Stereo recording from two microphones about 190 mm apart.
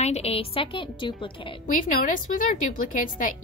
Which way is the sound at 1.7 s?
45° left (ahead or behind).